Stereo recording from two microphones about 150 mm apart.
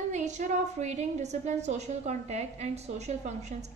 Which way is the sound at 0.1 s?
50° right (ahead or behind).